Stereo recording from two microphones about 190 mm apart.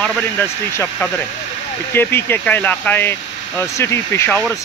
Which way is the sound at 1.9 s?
10° left (ahead or behind).